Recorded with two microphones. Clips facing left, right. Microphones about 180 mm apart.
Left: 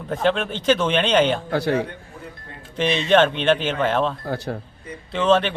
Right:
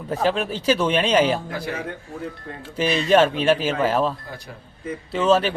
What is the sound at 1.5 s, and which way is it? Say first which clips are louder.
Speech: left 8 dB; 70° left (ahead or behind).